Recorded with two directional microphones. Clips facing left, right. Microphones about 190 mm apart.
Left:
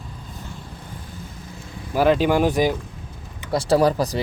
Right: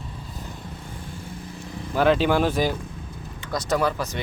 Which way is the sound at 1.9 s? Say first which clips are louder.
Left 2 dB; 5° left (ahead or behind).